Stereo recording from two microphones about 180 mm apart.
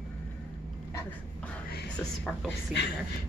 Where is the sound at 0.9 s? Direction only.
5° left (ahead or behind).